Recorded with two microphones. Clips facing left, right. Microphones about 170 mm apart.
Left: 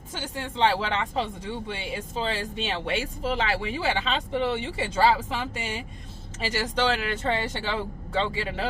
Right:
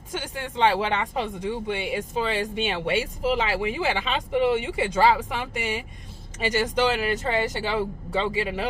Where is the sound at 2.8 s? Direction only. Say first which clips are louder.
Right 5 dB; 15° right (ahead or behind).